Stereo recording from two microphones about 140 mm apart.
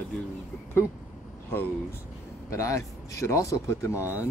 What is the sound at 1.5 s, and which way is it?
Speech, 15° left (ahead or behind).